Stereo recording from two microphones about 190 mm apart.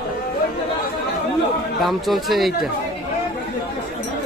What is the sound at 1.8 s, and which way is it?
Speech, centre (ahead or behind).